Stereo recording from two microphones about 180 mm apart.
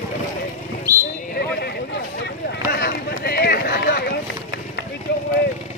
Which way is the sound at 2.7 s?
60° left (ahead or behind).